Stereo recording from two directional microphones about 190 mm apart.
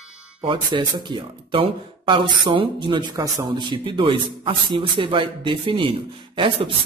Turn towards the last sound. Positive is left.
turn(degrees=-25)  # may be behind; listen again after turning